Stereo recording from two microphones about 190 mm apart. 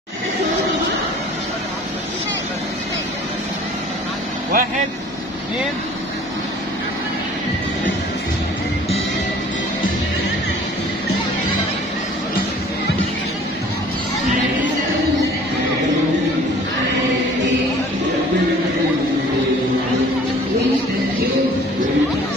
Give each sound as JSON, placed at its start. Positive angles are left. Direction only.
{"t": 4.5, "sound": "speech", "side_deg": -45}